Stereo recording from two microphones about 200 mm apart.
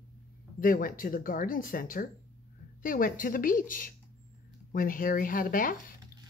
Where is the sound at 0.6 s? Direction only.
45° left (ahead or behind).